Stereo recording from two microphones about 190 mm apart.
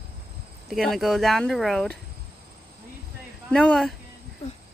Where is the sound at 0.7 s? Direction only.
Centre (ahead or behind).